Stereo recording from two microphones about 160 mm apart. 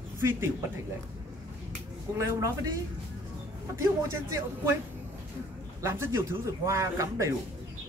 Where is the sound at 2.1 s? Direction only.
20° right (ahead or behind).